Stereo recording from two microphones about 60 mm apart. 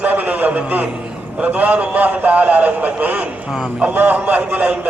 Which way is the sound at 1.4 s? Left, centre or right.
Right.